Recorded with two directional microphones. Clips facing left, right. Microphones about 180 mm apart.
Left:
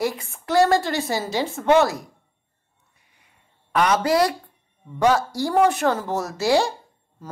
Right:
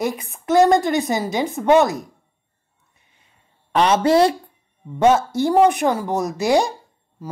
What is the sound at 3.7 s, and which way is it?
Speech, 25° right (ahead or behind).